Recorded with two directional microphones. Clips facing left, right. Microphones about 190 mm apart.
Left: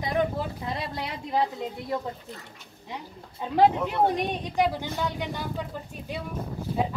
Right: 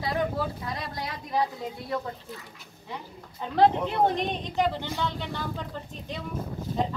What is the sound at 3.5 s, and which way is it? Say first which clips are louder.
A woman's voice: left 1 dB; 10° left (ahead or behind).